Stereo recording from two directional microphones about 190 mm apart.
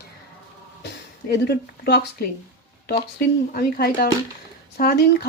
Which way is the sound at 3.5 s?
55° left (ahead or behind).